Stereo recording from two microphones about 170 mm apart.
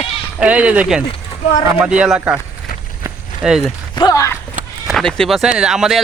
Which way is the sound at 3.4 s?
5° right (ahead or behind).